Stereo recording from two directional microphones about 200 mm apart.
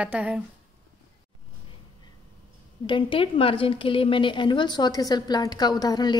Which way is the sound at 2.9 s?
25° left (ahead or behind).